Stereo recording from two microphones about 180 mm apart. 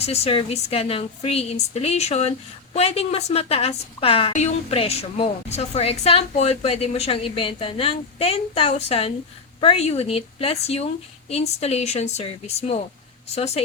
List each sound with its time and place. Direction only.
0.0 s a woman's voice: 35° left (ahead or behind)